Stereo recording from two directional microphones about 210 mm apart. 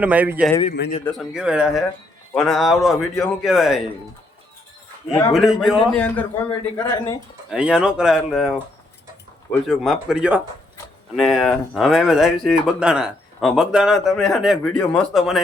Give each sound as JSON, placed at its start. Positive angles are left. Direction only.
{"t": 0.0, "sound": "a man's voice", "side_deg": -5}
{"t": 0.8, "sound": "a man's voice", "side_deg": 55}
{"t": 1.2, "sound": "speech", "side_deg": -5}
{"t": 5.3, "sound": "speech", "side_deg": 0}
{"t": 7.5, "sound": "speech", "side_deg": -5}